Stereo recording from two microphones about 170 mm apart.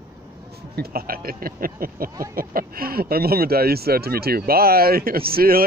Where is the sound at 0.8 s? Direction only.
60° right (ahead or behind).